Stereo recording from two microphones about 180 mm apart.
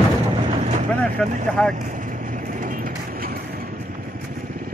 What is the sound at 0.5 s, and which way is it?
Vehicle, 40° right (ahead or behind).